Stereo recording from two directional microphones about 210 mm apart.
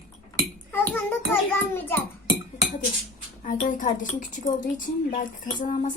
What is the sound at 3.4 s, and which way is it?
Speech, 40° left (ahead or behind).